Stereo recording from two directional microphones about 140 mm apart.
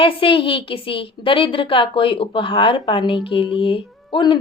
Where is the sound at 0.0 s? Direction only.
40° left (ahead or behind).